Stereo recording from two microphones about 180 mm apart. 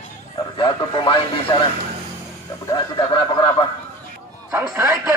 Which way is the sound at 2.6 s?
25° left (ahead or behind).